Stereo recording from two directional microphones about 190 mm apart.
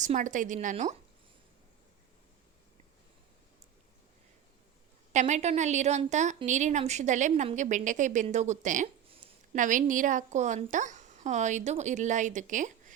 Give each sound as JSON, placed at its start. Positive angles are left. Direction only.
{"t": 0.0, "sound": "a woman's voice", "side_deg": -40}
{"t": 5.1, "sound": "a woman's voice", "side_deg": -35}
{"t": 9.0, "sound": "a sound", "side_deg": -30}
{"t": 9.6, "sound": "a woman's voice", "side_deg": -45}